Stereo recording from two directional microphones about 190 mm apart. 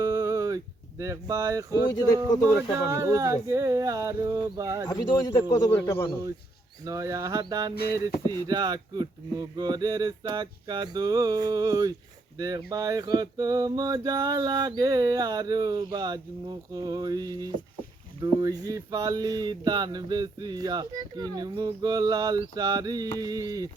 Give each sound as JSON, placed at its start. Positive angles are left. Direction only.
{"t": 0.0, "sound": "a sound", "side_deg": -15}
{"t": 2.6, "sound": "speech", "side_deg": -15}
{"t": 4.9, "sound": "a man's voice", "side_deg": 20}
{"t": 6.8, "sound": "speech", "side_deg": -15}
{"t": 8.4, "sound": "male singing", "side_deg": -20}